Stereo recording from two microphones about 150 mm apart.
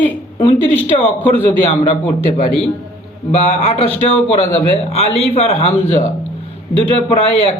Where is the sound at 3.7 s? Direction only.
40° left (ahead or behind).